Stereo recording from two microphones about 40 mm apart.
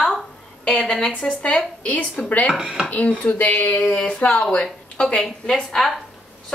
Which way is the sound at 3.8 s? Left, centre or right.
Centre.